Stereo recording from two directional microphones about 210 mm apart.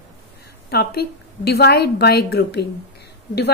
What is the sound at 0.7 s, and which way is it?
Speech, 50° left (ahead or behind).